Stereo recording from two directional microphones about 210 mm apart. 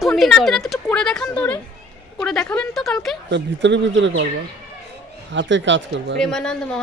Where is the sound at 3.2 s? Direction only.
55° right (ahead or behind).